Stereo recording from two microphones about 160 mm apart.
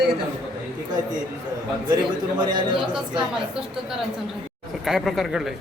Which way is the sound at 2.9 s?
5° right (ahead or behind).